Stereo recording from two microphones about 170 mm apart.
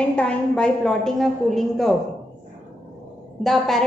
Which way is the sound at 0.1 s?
5° left (ahead or behind).